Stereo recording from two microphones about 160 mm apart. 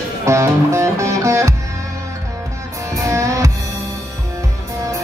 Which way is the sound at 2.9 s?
20° right (ahead or behind).